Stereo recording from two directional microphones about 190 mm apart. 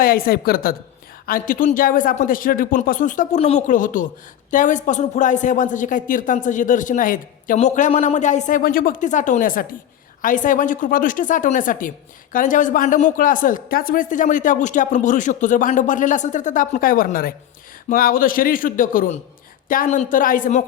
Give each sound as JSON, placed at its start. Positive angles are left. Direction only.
{"t": 0.0, "sound": "a woman's voice", "side_deg": 50}